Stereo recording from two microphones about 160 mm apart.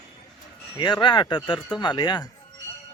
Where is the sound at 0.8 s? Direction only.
30° left (ahead or behind).